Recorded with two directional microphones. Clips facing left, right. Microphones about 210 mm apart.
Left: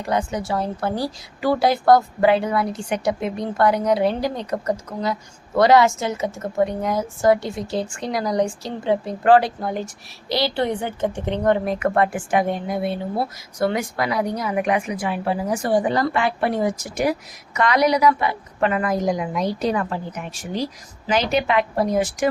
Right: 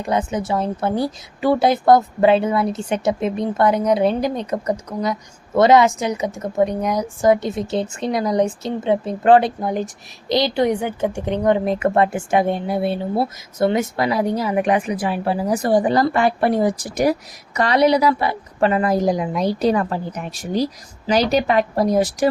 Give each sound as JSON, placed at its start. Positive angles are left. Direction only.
{"t": 0.0, "sound": "a woman's voice", "side_deg": -20}